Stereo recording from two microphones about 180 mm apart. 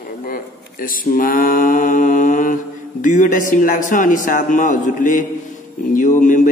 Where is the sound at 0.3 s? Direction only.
50° left (ahead or behind).